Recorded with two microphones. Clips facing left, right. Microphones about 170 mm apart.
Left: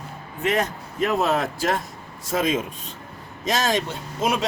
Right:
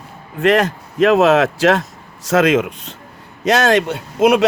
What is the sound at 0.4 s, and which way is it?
A man's voice, 90° right.